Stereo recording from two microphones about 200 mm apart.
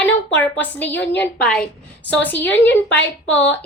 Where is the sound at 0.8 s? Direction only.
60° left (ahead or behind).